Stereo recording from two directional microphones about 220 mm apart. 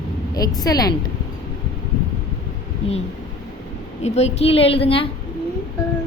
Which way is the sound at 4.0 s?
30° left (ahead or behind).